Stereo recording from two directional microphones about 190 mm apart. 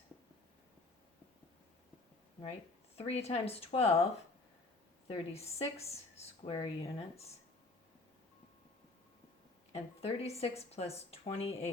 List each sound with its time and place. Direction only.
2.4 s speech: 30° left (ahead or behind)
5.0 s speech: 30° left (ahead or behind)
9.7 s speech: 30° left (ahead or behind)